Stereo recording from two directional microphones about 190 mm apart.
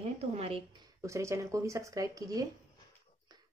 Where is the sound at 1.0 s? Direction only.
15° right (ahead or behind).